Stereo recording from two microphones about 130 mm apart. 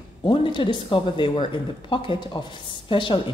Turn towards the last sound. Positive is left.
turn(degrees=40)  # may be behind; listen again after turning